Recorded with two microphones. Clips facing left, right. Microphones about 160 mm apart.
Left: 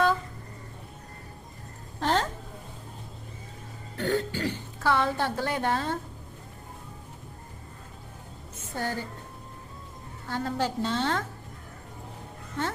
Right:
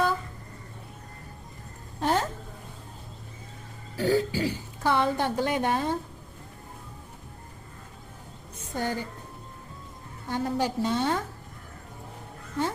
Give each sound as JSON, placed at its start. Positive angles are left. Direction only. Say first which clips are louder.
{"t": 2.0, "sound": "a sound", "louder": "even", "side_deg": -10}
{"t": 3.9, "sound": "speech", "louder": "right 3 dB", "side_deg": -5}
{"t": 8.7, "sound": "a woman's voice", "louder": "right 2 dB", "side_deg": -15}
{"t": 10.2, "sound": "a woman's voice", "louder": "right 2 dB", "side_deg": -15}